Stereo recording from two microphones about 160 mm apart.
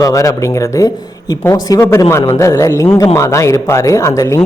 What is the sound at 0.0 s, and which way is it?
Speech, 20° left (ahead or behind).